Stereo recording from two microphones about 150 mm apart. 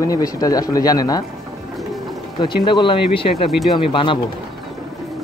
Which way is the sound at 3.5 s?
Centre (ahead or behind).